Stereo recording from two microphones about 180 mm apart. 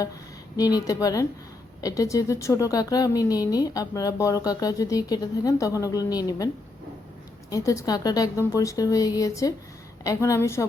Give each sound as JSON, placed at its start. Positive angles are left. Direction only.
{"t": 0.5, "sound": "a woman's voice", "side_deg": 20}
{"t": 7.5, "sound": "a woman's voice", "side_deg": 20}